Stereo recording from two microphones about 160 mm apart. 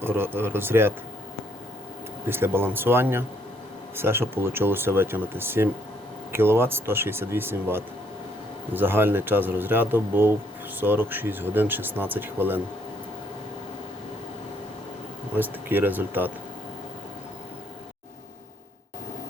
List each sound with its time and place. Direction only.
0.0 s speech: 15° right (ahead or behind)
2.3 s speech: 15° right (ahead or behind)
15.4 s speech: 10° right (ahead or behind)